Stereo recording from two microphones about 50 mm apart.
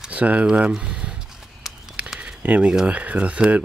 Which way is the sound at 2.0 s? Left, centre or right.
Right.